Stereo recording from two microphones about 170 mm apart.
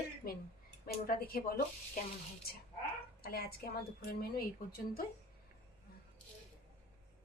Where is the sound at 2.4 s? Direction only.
65° left (ahead or behind).